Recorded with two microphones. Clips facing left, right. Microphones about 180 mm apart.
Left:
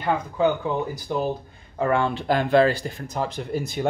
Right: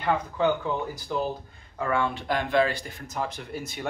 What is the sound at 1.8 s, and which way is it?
Speech, 30° left (ahead or behind).